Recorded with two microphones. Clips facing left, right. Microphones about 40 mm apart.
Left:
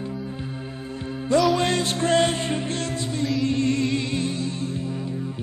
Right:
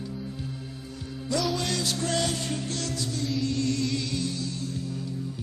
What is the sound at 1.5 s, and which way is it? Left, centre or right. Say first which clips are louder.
Music: left 7 dB; left.